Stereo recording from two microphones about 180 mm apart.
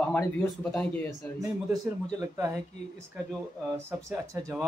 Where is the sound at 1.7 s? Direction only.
15° right (ahead or behind).